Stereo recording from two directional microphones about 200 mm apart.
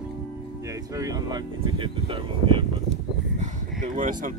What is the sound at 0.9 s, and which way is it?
Speech, 20° right (ahead or behind).